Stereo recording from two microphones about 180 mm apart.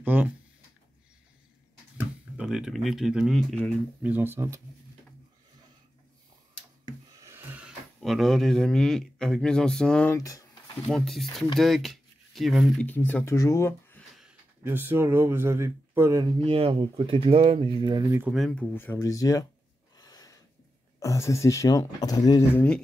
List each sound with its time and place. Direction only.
0.0 s speech: 10° right (ahead or behind)
2.0 s speech: 5° right (ahead or behind)
4.0 s speech: 10° right (ahead or behind)
6.9 s a sound: 15° right (ahead or behind); by 10.8 s 20° left (ahead or behind)
10.9 s speech: centre (ahead or behind)
12.8 s speech: 10° left (ahead or behind)
14.1 s speech: 10° right (ahead or behind)
16.3 s speech: 30° right (ahead or behind); by 18.3 s 15° right (ahead or behind)
18.3 s speech: 5° left (ahead or behind); by 19.4 s 20° left (ahead or behind)
20.0 s a sound: 20° left (ahead or behind)
21.0 s speech: 15° left (ahead or behind)